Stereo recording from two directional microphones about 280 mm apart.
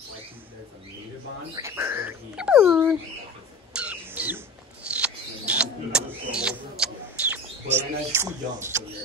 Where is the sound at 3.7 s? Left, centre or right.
Centre.